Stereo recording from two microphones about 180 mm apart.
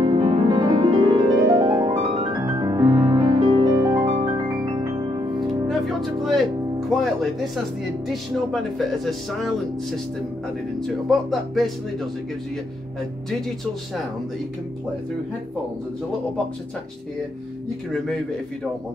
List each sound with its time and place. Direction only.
0.0 s music: 30° right (ahead or behind)
2.0 s music: 35° right (ahead or behind)
2.4 s music: 20° right (ahead or behind)
3.7 s music: 15° right (ahead or behind)
5.7 s music: centre (ahead or behind)
8.1 s speech: centre (ahead or behind)
11.1 s speech: centre (ahead or behind)